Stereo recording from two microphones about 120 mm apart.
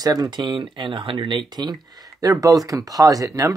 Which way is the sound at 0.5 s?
45° right (ahead or behind).